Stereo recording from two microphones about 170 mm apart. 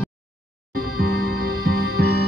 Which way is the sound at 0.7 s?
60° right (ahead or behind).